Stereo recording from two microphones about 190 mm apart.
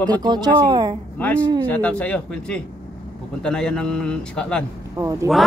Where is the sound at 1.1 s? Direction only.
10° left (ahead or behind).